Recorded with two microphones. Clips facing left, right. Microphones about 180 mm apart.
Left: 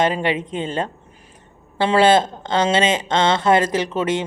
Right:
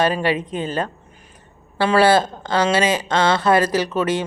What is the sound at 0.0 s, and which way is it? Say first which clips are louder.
Speech: even; 20° left (ahead or behind).